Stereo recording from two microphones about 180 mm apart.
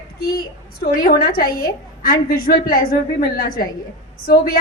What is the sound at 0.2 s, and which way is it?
A woman's voice, 60° left (ahead or behind).